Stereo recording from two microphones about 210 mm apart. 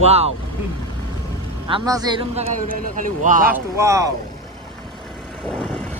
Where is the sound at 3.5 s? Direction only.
15° right (ahead or behind).